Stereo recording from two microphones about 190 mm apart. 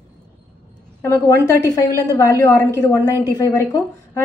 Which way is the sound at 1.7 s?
20° left (ahead or behind).